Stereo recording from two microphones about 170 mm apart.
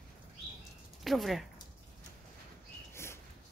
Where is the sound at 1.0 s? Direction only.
Centre (ahead or behind).